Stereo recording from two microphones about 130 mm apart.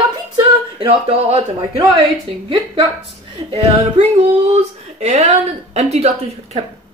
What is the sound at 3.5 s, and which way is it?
Speech, 55° right (ahead or behind).